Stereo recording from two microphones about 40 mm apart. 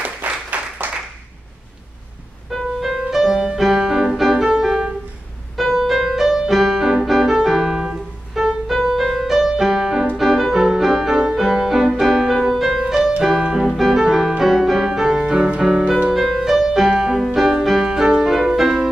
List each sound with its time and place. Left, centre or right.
0.0 s applause: right
2.5 s music: centre
9.0 s music: centre
13.7 s music: centre; by 15.6 s right
16.1 s music: centre